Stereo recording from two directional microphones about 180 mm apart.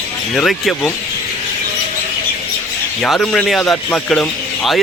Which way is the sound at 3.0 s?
5° left (ahead or behind).